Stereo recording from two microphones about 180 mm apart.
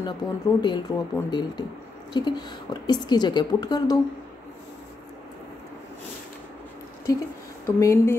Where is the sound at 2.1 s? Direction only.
25° left (ahead or behind).